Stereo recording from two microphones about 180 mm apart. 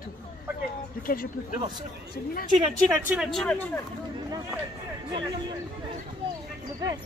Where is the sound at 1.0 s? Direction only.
50° left (ahead or behind).